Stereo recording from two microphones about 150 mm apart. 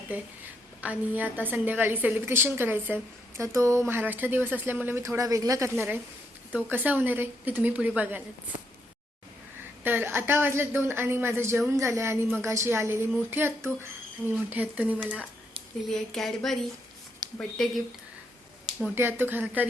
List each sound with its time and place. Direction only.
0.1 s a woman's voice: 10° right (ahead or behind)
9.8 s a woman's voice: 15° right (ahead or behind)
15.9 s speech: centre (ahead or behind)
18.9 s a woman's voice: 15° right (ahead or behind)